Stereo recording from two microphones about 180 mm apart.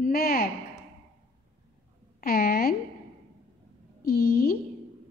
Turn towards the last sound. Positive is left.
turn(degrees=55)  # may be behind; listen again after turning